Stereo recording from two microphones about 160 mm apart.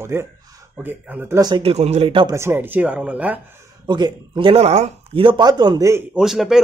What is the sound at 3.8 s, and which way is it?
Speech, 30° right (ahead or behind).